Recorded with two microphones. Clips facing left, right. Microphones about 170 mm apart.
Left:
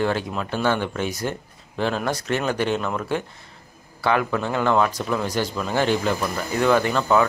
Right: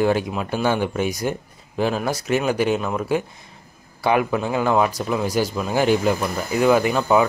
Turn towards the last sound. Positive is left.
turn(degrees=-10)  # may be behind; listen again after turning